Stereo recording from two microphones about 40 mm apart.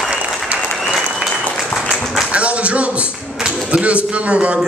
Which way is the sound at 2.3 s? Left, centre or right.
Right.